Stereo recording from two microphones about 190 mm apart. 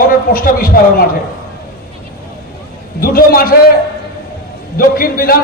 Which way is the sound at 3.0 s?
50° left (ahead or behind).